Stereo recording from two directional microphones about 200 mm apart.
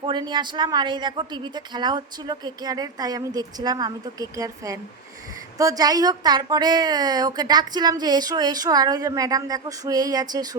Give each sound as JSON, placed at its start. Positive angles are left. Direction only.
{"t": 0.0, "sound": "a woman's voice", "side_deg": -20}